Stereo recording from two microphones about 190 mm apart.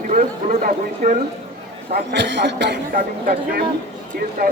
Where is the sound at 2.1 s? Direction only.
65° right (ahead or behind).